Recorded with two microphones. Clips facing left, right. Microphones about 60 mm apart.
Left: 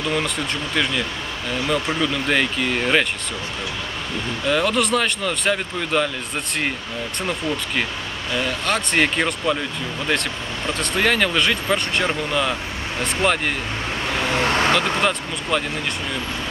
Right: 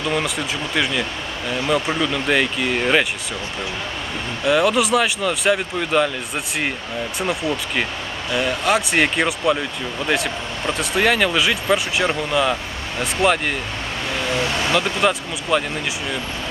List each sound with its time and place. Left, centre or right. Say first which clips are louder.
1.7 s speech: right 2 dB; centre
4.5 s speech: right 3 dB; centre
7.2 s speech: right 2 dB; centre
10.7 s speech: right 2 dB; centre
14.3 s speech: left 3 dB; left
14.7 s speech: right 1 dB; centre